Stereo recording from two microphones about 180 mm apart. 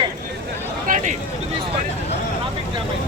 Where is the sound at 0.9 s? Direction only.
45° right (ahead or behind).